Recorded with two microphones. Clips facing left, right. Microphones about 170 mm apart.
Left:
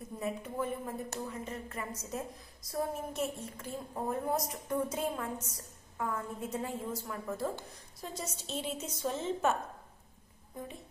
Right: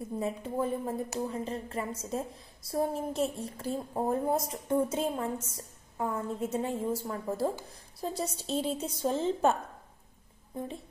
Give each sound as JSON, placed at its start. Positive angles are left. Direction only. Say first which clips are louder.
{"t": 0.2, "sound": "a woman's voice", "louder": "right 3 dB", "side_deg": -30}